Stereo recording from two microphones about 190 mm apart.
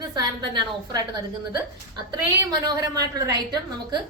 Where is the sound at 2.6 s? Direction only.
20° right (ahead or behind).